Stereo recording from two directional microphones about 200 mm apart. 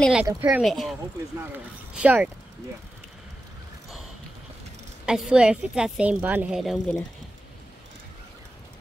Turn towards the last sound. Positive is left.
turn(degrees=-5)  # may be behind; listen again after turning